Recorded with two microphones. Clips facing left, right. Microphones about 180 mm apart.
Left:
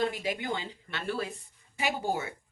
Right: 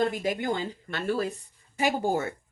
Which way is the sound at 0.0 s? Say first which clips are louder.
Right 4 dB; 45° right (ahead or behind).